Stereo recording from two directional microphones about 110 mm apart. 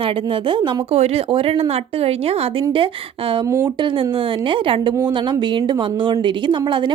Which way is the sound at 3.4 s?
30° right (ahead or behind).